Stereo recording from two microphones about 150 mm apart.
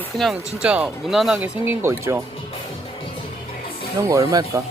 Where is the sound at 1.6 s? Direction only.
15° right (ahead or behind).